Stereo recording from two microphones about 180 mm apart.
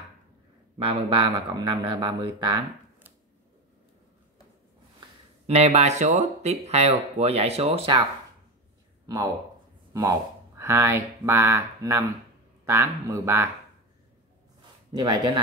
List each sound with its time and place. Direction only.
0.7 s speech: 30° right (ahead or behind)
5.5 s speech: 35° right (ahead or behind)
9.0 s speech: 20° right (ahead or behind)
15.0 s speech: 25° right (ahead or behind)